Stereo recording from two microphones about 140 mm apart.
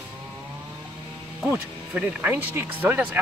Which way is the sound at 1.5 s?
15° right (ahead or behind).